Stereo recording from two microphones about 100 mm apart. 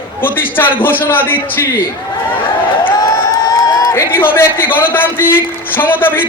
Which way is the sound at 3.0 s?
40° left (ahead or behind).